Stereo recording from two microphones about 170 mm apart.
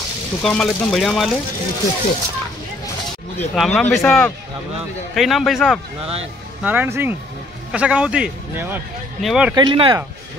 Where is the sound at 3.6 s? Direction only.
5° left (ahead or behind).